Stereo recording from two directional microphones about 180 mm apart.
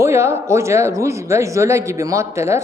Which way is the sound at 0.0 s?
15° right (ahead or behind).